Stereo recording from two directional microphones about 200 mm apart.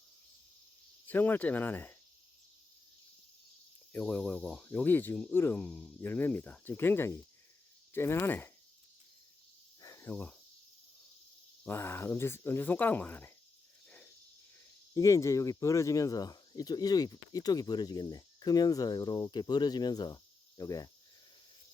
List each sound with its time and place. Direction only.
1.0 s speech: 10° left (ahead or behind)
3.9 s speech: 5° left (ahead or behind)
9.8 s cricket: 15° left (ahead or behind)
11.6 s speech: 10° left (ahead or behind)
14.9 s speech: 15° left (ahead or behind)